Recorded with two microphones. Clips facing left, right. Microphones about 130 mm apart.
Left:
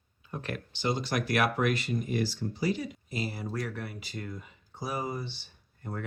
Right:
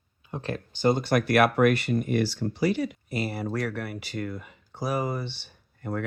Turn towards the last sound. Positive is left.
turn(degrees=-85)